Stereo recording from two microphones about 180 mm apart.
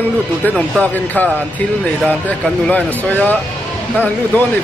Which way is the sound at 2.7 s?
10° left (ahead or behind).